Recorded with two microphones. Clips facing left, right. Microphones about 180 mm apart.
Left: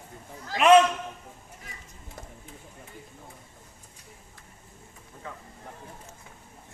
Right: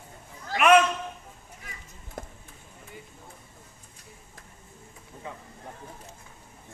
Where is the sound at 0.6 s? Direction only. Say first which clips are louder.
Left 2 dB; 25° left (ahead or behind).